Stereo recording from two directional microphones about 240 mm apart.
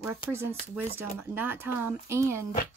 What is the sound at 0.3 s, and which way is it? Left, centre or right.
Speech, centre.